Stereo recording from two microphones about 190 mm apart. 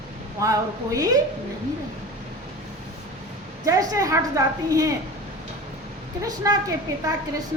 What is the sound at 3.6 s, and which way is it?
A woman's voice, 20° right (ahead or behind).